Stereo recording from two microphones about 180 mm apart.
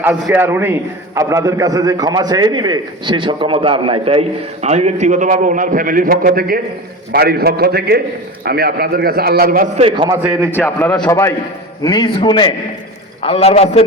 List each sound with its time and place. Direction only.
0.0 s a man's voice: 10° right (ahead or behind); by 9.8 s 50° right (ahead or behind)
9.8 s a man's voice: 30° right (ahead or behind)
10.2 s a man's voice: 10° right (ahead or behind)
10.6 s a man's voice: 10° left (ahead or behind); by 13.8 s 35° left (ahead or behind)